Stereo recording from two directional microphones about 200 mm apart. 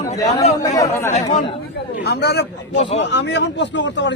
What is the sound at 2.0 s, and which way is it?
A man's voice, 55° left (ahead or behind).